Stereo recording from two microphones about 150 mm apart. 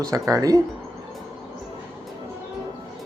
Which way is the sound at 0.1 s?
20° right (ahead or behind).